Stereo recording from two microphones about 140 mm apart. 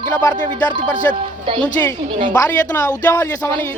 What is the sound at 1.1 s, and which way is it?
Speech, 15° left (ahead or behind).